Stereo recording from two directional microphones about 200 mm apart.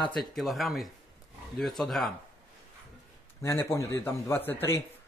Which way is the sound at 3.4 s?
15° left (ahead or behind).